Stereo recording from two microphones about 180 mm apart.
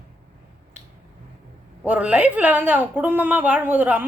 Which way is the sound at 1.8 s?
5° right (ahead or behind).